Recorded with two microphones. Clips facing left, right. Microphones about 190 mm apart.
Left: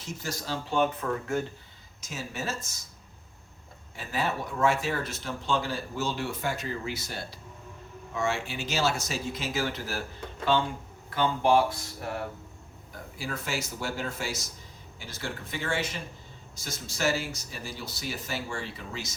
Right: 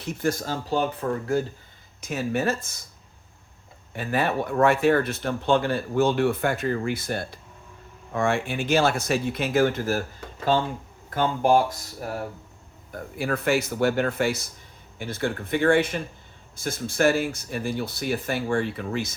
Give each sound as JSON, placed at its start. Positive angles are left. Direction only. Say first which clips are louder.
{"t": 0.0, "sound": "speech", "louder": "right 10 dB", "side_deg": -60}
{"t": 2.0, "sound": "speech", "louder": "right 11 dB", "side_deg": -60}
{"t": 3.9, "sound": "speech", "louder": "right 6 dB", "side_deg": -60}
{"t": 12.9, "sound": "speech", "louder": "right 9 dB", "side_deg": -60}